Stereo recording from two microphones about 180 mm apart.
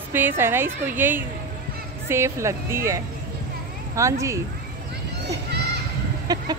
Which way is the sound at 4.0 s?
15° right (ahead or behind).